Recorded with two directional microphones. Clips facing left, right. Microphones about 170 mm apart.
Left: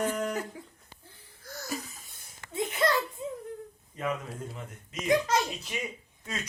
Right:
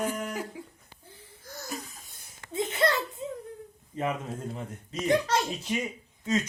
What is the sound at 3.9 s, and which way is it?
A child's voice, 30° right (ahead or behind).